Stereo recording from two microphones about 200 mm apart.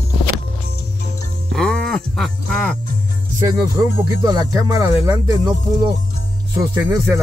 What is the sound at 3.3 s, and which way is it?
Speech, 15° right (ahead or behind).